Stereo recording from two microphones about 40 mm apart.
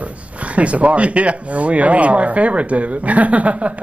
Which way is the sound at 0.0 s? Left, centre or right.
Right.